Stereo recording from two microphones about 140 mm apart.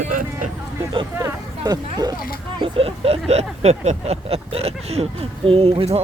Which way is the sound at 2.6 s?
40° right (ahead or behind).